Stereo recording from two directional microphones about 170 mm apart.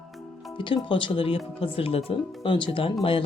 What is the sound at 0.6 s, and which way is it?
Speech, 30° left (ahead or behind).